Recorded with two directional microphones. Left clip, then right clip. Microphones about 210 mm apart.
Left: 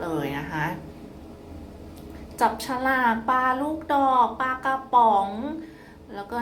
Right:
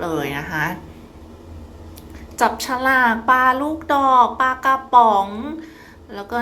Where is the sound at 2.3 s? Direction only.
15° right (ahead or behind).